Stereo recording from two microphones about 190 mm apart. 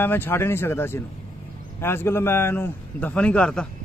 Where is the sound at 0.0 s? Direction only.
10° left (ahead or behind).